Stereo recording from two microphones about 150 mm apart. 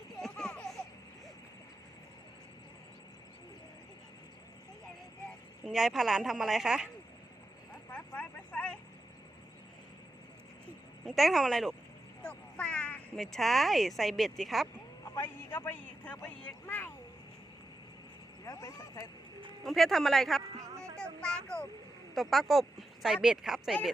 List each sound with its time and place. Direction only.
0.2 s a sound: 5° left (ahead or behind)
5.6 s speech: centre (ahead or behind)
7.9 s vehicle: 10° left (ahead or behind)
11.0 s speech: centre (ahead or behind)
12.2 s a sound: 5° left (ahead or behind)
13.3 s speech: centre (ahead or behind)
15.0 s speech: 15° left (ahead or behind)
18.4 s speech: 20° left (ahead or behind)
19.6 s speech: centre (ahead or behind)
20.5 s a sound: 20° right (ahead or behind)
21.0 s vehicle: 5° left (ahead or behind)
22.1 s speech: centre (ahead or behind)